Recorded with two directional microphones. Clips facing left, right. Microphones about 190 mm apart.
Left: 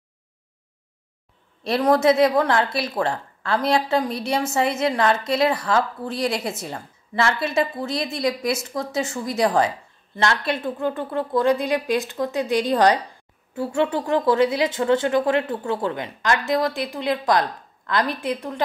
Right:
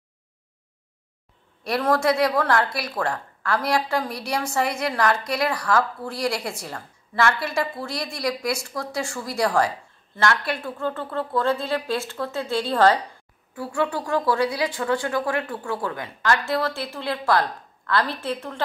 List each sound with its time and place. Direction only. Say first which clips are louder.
1.6 s a woman's voice: left 4 dB; 20° left (ahead or behind)